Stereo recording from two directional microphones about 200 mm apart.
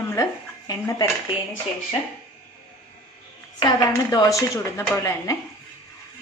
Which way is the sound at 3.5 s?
20° left (ahead or behind).